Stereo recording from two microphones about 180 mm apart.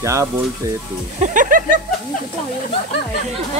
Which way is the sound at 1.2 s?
45° right (ahead or behind).